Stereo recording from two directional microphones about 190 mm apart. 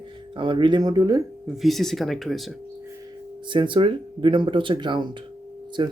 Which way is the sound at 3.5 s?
25° right (ahead or behind).